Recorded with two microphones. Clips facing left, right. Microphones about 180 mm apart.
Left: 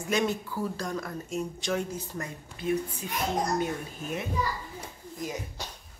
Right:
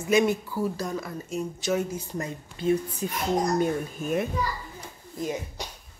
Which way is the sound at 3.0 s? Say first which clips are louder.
Right 5 dB; 40° right (ahead or behind).